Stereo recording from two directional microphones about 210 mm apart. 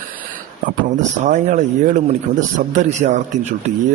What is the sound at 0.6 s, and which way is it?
A man's voice, 40° right (ahead or behind).